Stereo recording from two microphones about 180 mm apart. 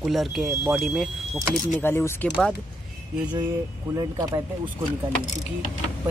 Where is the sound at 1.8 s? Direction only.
15° left (ahead or behind).